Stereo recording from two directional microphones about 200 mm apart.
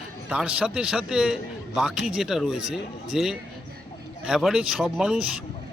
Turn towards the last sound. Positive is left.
turn(degrees=-5)  # may be behind; listen again after turning